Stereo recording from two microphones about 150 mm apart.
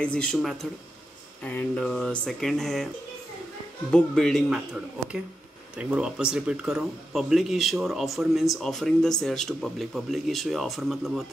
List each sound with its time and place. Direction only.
0.0 s speech: 5° left (ahead or behind)
3.9 s speech: 5° left (ahead or behind)